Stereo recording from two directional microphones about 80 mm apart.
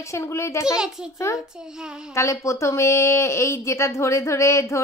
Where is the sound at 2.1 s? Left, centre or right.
Left.